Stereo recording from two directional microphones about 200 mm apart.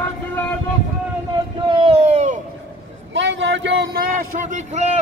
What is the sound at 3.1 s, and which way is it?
Speech, 65° right (ahead or behind).